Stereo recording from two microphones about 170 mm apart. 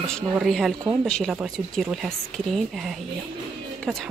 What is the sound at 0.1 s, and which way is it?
Speech, centre (ahead or behind).